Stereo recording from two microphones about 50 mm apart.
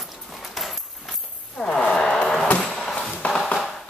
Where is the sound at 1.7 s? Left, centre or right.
Centre.